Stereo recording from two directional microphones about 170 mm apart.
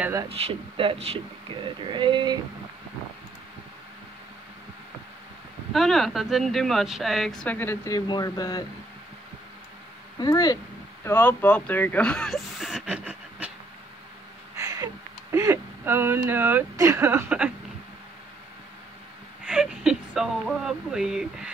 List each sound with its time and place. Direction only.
0.0 s speech: 20° right (ahead or behind)
0.3 s speech: 35° right (ahead or behind)
5.7 s speech: centre (ahead or behind); by 8.6 s 20° left (ahead or behind)
10.1 s speech: 25° left (ahead or behind)
11.1 s speech: 10° left (ahead or behind); by 13.5 s 5° right (ahead or behind)
14.5 s a sound: 20° right (ahead or behind)
15.3 s speech: 15° right (ahead or behind)
19.4 s speech: 5° right (ahead or behind)